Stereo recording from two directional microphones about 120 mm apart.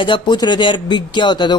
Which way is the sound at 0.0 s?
40° left (ahead or behind).